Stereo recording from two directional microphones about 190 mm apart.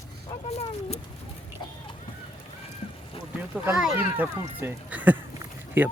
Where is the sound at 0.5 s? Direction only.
35° left (ahead or behind).